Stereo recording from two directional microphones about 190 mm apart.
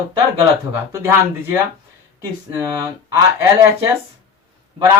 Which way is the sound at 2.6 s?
15° right (ahead or behind).